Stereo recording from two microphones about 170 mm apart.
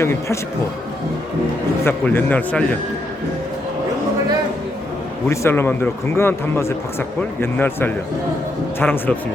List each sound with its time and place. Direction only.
0.0 s a man's voice: 15° left (ahead or behind)
1.8 s a man's voice: 15° left (ahead or behind)
5.3 s a man's voice: 15° left (ahead or behind)